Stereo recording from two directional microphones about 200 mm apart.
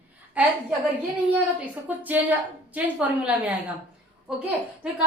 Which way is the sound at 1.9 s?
5° right (ahead or behind).